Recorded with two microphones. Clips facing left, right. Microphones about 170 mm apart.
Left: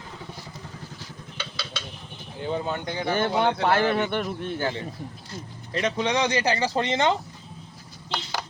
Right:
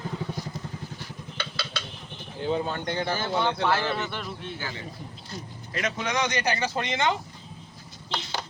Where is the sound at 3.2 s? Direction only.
55° left (ahead or behind).